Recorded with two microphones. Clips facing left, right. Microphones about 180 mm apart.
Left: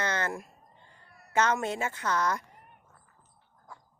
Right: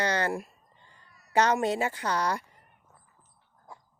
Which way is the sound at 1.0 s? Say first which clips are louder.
Left 4 dB; 60° left (ahead or behind).